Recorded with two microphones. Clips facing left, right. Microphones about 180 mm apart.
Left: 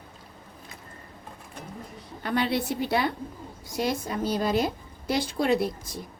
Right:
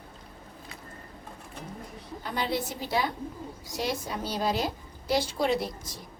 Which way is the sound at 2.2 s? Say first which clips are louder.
Left 5 dB; 65° left (ahead or behind).